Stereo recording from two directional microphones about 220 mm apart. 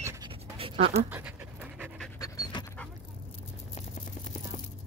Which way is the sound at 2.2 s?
15° left (ahead or behind).